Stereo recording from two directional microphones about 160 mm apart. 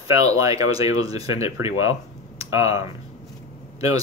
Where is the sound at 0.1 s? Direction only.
20° right (ahead or behind).